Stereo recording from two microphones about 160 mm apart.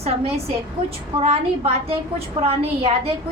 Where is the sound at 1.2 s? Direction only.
40° right (ahead or behind).